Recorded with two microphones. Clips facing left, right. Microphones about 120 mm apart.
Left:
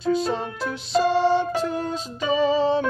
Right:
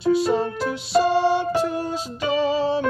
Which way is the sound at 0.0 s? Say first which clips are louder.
Right 4 dB; 10° right (ahead or behind).